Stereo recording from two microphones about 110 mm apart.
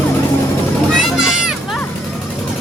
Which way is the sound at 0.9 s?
5° right (ahead or behind).